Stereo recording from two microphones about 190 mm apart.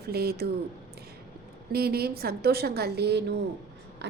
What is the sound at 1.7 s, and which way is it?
A woman's voice, 55° right (ahead or behind).